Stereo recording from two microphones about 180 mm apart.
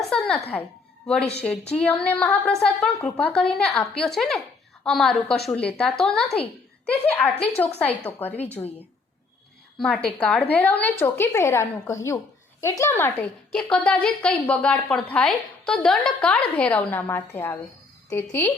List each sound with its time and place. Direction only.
0.0 s a sound: centre (ahead or behind)
1.0 s a woman's voice: 5° left (ahead or behind)
9.7 s a woman's voice: 5° left (ahead or behind)